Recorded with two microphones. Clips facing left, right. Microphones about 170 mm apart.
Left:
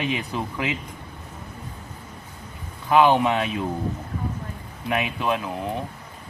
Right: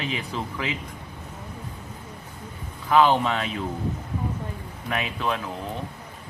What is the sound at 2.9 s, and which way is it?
Speech, 15° left (ahead or behind).